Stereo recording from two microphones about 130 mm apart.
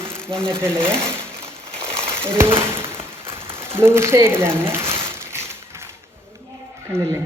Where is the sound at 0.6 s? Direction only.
20° right (ahead or behind).